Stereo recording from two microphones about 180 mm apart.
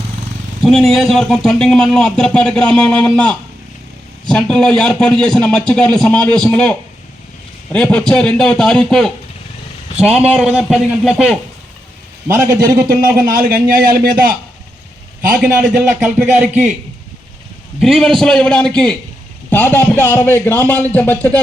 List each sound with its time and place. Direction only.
0.6 s speech: centre (ahead or behind)
12.4 s a man's voice: 20° right (ahead or behind)
13.0 s a man's voice: 50° right (ahead or behind)
15.8 s speech: 10° right (ahead or behind)
17.7 s a man's voice: centre (ahead or behind)